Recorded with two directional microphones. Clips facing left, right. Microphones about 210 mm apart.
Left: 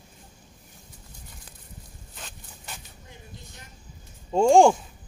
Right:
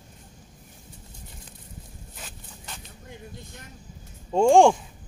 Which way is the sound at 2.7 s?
10° left (ahead or behind).